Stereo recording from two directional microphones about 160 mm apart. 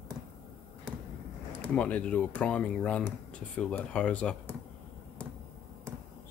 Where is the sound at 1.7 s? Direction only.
10° left (ahead or behind).